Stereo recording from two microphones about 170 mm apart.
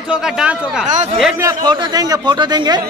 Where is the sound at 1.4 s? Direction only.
20° right (ahead or behind).